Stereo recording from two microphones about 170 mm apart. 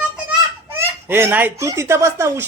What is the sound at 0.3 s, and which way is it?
Speech, 15° right (ahead or behind).